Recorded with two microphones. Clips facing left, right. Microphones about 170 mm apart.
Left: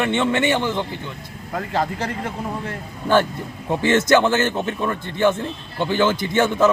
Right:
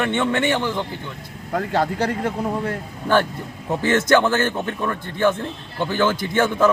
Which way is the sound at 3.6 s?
10° left (ahead or behind).